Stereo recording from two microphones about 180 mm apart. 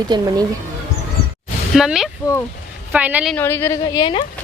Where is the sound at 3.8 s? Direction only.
25° left (ahead or behind).